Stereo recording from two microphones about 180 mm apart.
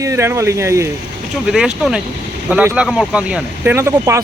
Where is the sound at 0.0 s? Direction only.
15° right (ahead or behind).